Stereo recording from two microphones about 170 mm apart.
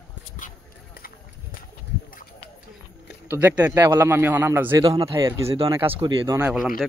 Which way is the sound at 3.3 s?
10° right (ahead or behind).